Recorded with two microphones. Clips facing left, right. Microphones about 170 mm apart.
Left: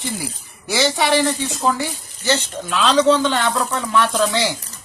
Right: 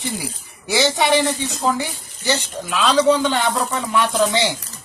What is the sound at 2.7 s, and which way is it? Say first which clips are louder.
Speech: left 1 dB; 5° right (ahead or behind).